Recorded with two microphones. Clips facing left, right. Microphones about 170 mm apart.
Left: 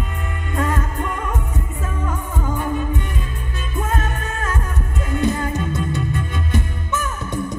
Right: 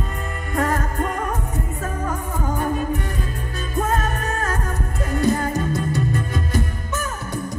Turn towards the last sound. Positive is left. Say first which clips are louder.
# left 1 dB
turn(degrees=-40)  # may be behind; listen again after turning